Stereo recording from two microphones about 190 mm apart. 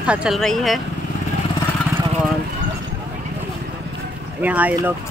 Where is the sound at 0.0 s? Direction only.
5° right (ahead or behind).